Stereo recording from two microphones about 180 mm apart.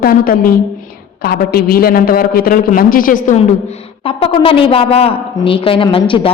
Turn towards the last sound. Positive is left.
turn(degrees=30)  # may be behind; listen again after turning